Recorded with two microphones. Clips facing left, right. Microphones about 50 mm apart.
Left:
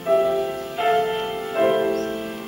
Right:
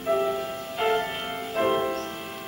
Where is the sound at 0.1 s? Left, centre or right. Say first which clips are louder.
Left 6 dB; left.